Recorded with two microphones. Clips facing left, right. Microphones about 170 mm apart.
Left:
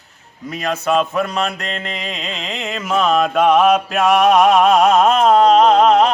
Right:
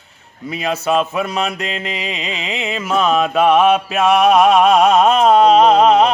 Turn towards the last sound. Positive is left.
turn(degrees=0)  # may be behind; listen again after turning